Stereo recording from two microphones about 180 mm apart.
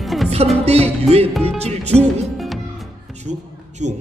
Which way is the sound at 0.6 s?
35° right (ahead or behind).